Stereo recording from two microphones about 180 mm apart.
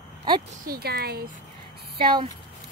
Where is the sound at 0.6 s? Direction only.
60° right (ahead or behind).